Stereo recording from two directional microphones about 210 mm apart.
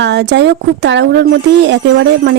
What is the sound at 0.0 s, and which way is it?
Speech, 55° right (ahead or behind).